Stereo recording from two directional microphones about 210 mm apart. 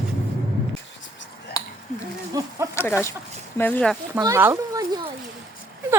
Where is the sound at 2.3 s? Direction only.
20° right (ahead or behind).